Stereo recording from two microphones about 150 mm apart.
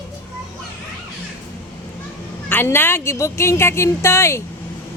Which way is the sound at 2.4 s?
15° left (ahead or behind).